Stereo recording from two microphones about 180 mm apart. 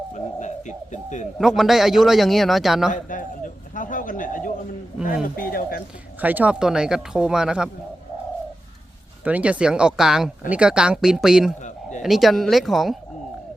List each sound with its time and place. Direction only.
0.1 s bird: 40° left (ahead or behind)
1.4 s a man's voice: centre (ahead or behind)
2.9 s speech: 45° left (ahead or behind)
3.8 s bird: 45° left (ahead or behind)
5.4 s speech: 55° left (ahead or behind)
6.2 s a man's voice: 10° right (ahead or behind)
9.2 s a man's voice: 10° right (ahead or behind)
11.6 s a sound: 45° left (ahead or behind)
12.0 s a man's voice: centre (ahead or behind)